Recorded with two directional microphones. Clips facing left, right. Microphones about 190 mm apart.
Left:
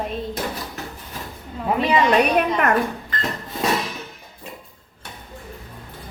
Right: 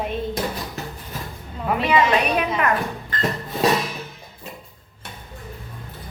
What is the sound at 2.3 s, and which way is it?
Speech, 50° left (ahead or behind).